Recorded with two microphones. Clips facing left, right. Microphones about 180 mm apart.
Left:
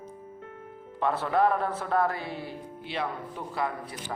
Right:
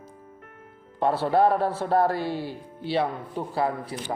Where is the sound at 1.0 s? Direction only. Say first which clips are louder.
Right 4 dB; 30° right (ahead or behind).